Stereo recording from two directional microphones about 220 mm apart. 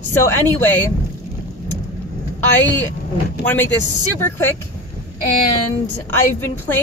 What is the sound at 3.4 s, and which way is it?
Speech, 5° left (ahead or behind).